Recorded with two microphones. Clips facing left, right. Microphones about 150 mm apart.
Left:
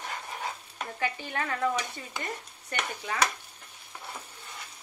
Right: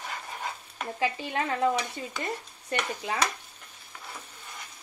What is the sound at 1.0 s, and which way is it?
Stir, 25° right (ahead or behind).